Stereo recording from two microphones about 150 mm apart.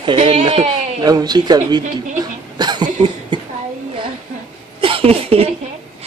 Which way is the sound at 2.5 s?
30° right (ahead or behind).